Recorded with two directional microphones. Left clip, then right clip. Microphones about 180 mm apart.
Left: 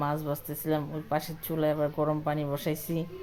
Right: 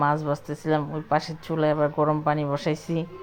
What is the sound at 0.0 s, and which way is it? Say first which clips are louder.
Speech: right 8 dB; 20° right (ahead or behind).